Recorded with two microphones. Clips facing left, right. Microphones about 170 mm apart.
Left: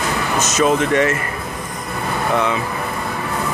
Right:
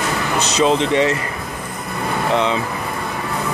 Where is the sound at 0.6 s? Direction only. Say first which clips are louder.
Even; 20° right (ahead or behind).